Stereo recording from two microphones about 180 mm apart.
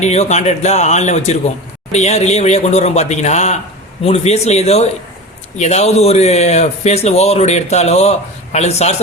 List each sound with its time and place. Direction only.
0.0 s a man's voice: 40° left (ahead or behind)